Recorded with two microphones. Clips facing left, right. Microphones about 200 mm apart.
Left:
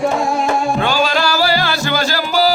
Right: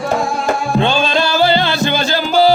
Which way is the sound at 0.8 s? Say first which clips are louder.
Right 1 dB; 25° right (ahead or behind).